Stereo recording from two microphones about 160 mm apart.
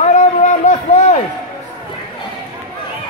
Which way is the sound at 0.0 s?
50° left (ahead or behind).